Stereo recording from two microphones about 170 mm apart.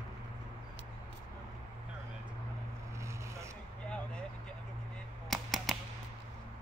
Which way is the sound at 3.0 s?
15° right (ahead or behind).